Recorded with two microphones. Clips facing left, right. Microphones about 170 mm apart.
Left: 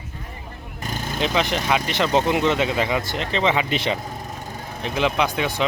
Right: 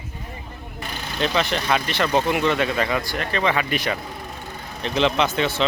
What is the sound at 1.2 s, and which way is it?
Speech, 15° left (ahead or behind).